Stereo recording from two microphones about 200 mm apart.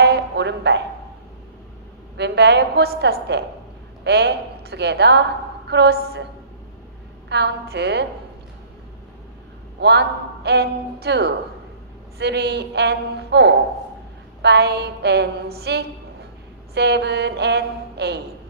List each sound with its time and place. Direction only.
0.0 s a sound: 55° right (ahead or behind)
2.1 s a man's voice: 60° right (ahead or behind)
7.2 s a man's voice: 55° right (ahead or behind)
9.8 s a man's voice: 55° right (ahead or behind)